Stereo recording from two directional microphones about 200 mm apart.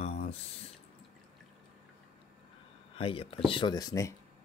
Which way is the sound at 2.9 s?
25° left (ahead or behind).